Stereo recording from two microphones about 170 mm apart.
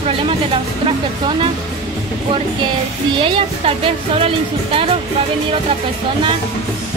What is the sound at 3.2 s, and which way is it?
A woman's voice, 30° right (ahead or behind).